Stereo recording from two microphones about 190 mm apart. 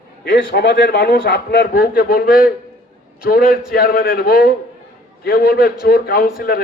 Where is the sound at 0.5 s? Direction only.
55° left (ahead or behind).